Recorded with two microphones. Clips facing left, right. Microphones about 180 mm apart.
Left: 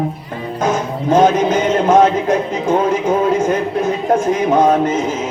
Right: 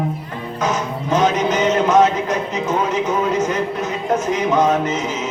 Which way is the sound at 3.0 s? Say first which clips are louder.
Left 4 dB; 50° left (ahead or behind).